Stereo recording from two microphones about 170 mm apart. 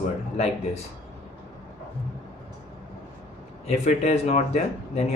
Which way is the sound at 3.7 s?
40° left (ahead or behind).